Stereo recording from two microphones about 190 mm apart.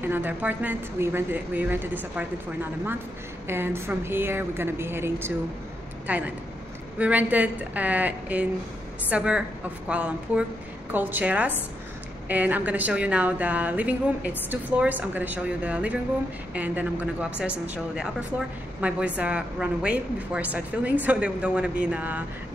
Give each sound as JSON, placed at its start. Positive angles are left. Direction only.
{"t": 0.0, "sound": "a woman's voice", "side_deg": -10}
{"t": 18.8, "sound": "a woman's voice", "side_deg": -5}